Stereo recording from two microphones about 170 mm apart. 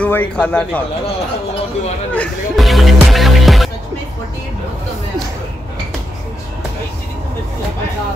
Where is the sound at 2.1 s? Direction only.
5° left (ahead or behind).